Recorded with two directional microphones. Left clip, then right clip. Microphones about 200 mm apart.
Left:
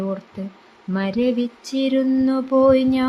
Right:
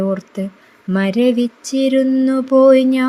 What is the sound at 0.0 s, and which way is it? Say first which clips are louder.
Speech: right 7 dB; 25° right (ahead or behind).